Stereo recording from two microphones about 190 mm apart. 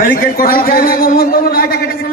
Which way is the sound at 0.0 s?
50° left (ahead or behind).